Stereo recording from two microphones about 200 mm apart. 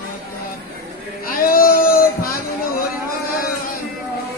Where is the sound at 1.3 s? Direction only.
45° left (ahead or behind).